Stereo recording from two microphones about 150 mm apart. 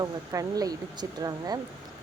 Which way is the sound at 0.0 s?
25° right (ahead or behind).